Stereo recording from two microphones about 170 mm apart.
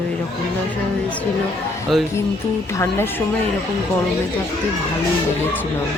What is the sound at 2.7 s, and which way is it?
Speech, 15° left (ahead or behind).